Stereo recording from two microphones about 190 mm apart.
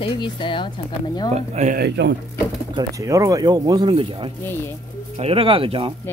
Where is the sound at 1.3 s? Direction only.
35° right (ahead or behind).